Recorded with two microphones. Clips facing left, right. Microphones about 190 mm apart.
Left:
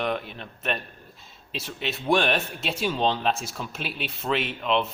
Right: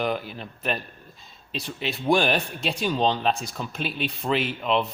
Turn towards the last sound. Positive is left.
turn(degrees=0)  # may be behind; listen again after turning